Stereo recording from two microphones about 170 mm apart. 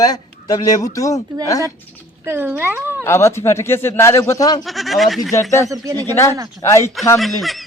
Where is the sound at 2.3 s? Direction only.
10° right (ahead or behind).